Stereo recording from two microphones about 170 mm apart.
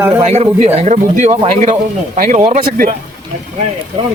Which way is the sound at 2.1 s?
55° right (ahead or behind).